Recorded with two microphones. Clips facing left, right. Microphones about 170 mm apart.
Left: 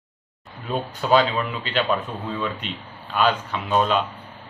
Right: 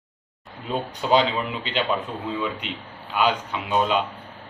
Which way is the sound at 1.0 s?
20° right (ahead or behind).